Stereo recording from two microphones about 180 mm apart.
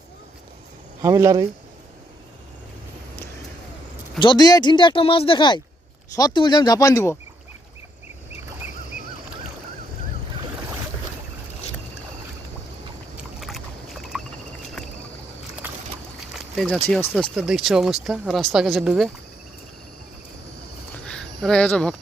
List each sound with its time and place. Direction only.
1.0 s speech: 15° right (ahead or behind)
4.2 s speech: 25° left (ahead or behind)
13.4 s boat: centre (ahead or behind)
16.6 s speech: centre (ahead or behind)
21.1 s speech: 5° left (ahead or behind)